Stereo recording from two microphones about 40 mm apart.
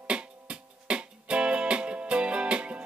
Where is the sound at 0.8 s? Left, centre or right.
Right.